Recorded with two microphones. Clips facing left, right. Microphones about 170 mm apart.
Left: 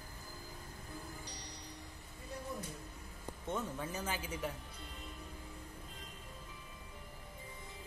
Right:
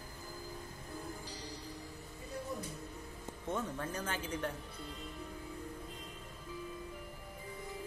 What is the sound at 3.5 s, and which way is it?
Speech, 5° left (ahead or behind).